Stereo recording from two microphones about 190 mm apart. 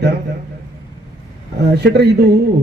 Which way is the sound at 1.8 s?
60° right (ahead or behind).